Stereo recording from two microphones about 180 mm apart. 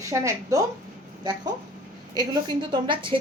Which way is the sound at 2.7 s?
30° right (ahead or behind).